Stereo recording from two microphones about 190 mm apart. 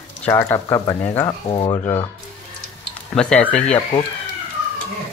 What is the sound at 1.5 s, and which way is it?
Speech, 25° left (ahead or behind).